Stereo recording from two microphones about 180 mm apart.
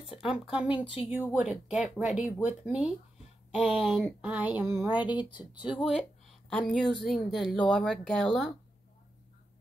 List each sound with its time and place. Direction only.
0.3 s a woman's voice: 5° right (ahead or behind)
5.0 s speech: 25° left (ahead or behind)
6.7 s speech: 5° left (ahead or behind)